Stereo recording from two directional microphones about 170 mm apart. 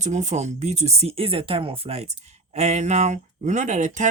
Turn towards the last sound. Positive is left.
turn(degrees=-45)  # may be behind; listen again after turning